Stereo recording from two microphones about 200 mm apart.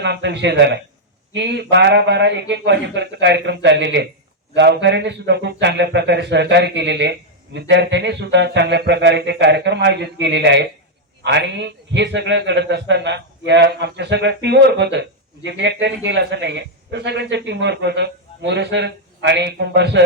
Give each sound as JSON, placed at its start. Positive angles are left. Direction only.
{"t": 0.0, "sound": "a man's voice", "side_deg": -60}